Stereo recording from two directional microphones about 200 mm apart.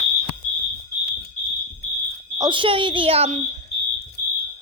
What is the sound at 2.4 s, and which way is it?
A woman's voice, 25° right (ahead or behind).